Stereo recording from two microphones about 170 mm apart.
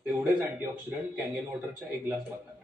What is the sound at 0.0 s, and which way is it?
A man's voice, 10° right (ahead or behind).